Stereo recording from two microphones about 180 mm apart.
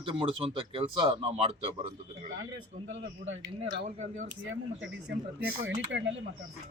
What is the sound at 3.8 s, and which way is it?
Speech, 40° right (ahead or behind).